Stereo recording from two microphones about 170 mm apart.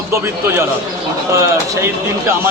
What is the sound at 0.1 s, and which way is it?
Speech, 15° right (ahead or behind).